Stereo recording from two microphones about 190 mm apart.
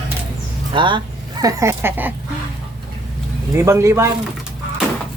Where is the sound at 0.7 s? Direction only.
25° right (ahead or behind).